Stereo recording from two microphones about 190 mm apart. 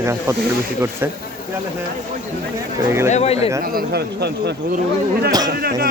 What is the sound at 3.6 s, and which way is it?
A man's voice, 55° right (ahead or behind).